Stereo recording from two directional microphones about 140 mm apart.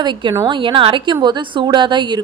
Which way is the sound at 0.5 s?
35° right (ahead or behind).